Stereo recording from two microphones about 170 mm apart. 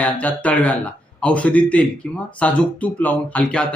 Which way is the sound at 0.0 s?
10° left (ahead or behind).